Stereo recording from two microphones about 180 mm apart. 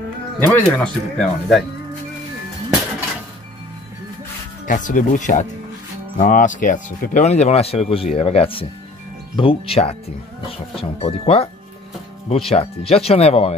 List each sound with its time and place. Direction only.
0.5 s speech: 5° left (ahead or behind)
4.6 s speech: 45° left (ahead or behind)